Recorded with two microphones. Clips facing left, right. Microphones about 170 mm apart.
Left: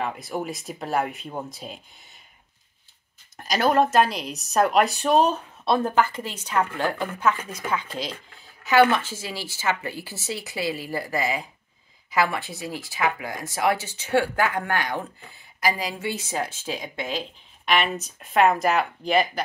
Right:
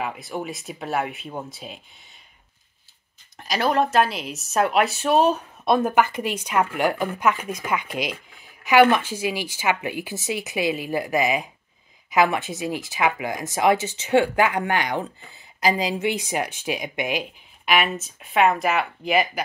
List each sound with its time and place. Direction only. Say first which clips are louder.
0.0 s speech: even; centre (ahead or behind)
3.3 s a woman's voice: left 1 dB; centre (ahead or behind)